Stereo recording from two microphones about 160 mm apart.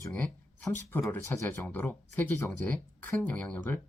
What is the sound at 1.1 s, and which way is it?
Speech, 10° left (ahead or behind).